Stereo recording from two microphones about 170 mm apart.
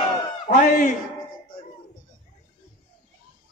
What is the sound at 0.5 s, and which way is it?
Speech, 45° left (ahead or behind).